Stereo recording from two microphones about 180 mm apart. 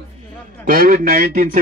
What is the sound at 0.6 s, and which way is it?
A man's voice, 50° right (ahead or behind).